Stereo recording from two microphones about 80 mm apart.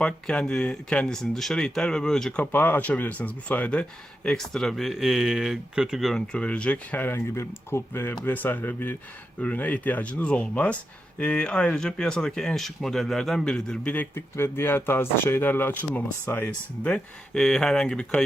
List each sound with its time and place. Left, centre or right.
0.0 s speech: centre
2.4 s speech: left; by 6.2 s centre
6.3 s speech: centre
13.9 s speech: left
16.5 s speech: centre